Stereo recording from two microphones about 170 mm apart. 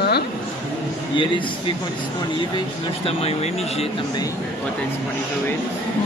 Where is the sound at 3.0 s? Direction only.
35° left (ahead or behind).